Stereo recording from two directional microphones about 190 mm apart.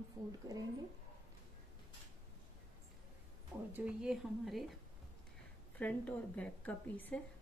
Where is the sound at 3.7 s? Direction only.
5° right (ahead or behind).